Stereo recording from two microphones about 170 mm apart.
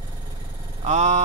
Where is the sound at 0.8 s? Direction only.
45° right (ahead or behind).